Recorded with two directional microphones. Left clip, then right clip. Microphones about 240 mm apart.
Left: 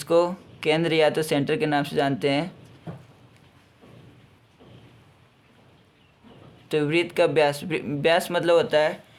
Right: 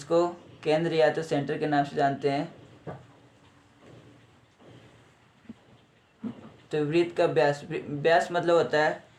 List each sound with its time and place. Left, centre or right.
0.0 s speech: left
6.7 s speech: left